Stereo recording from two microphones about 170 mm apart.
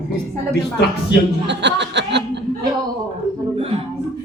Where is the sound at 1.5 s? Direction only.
90° right.